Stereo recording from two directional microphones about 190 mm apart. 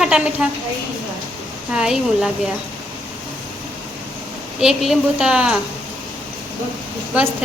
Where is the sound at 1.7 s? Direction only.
5° right (ahead or behind).